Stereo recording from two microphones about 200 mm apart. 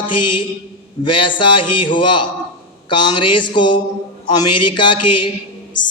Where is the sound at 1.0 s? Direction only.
25° left (ahead or behind).